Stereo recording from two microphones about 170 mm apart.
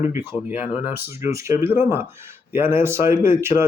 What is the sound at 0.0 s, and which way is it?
Speech, 15° right (ahead or behind).